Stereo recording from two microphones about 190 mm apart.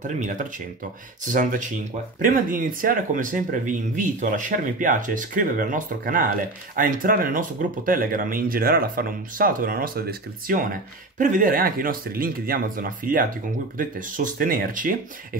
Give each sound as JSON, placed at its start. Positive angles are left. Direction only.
{"t": 0.0, "sound": "speech", "side_deg": -40}